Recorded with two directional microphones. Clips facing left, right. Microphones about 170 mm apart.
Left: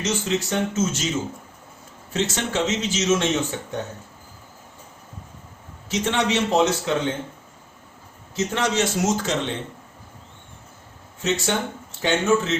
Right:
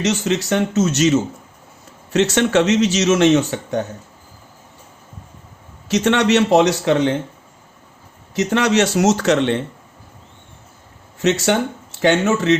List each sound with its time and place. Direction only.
0.0 s speech: 75° right (ahead or behind)
5.9 s speech: 75° right (ahead or behind)
8.4 s speech: 75° right (ahead or behind)
11.2 s speech: 75° right (ahead or behind)